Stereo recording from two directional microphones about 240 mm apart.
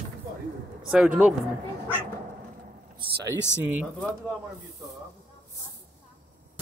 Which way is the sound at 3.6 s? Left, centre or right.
Centre.